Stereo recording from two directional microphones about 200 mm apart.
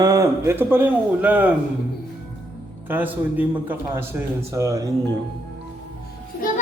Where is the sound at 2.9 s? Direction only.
10° right (ahead or behind).